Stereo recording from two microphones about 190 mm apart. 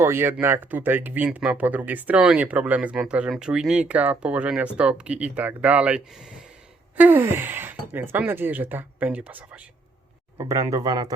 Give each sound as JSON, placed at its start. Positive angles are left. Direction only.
{"t": 0.0, "sound": "speech", "side_deg": -10}